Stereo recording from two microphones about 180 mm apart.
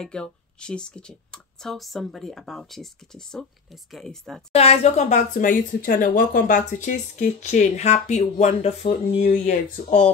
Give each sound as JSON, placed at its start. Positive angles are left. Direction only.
{"t": 0.0, "sound": "speech", "side_deg": 5}
{"t": 4.6, "sound": "speech", "side_deg": 35}